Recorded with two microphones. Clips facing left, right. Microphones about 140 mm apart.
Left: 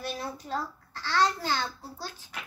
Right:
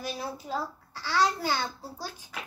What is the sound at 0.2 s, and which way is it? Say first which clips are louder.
A child's voice: right 1 dB; 10° right (ahead or behind).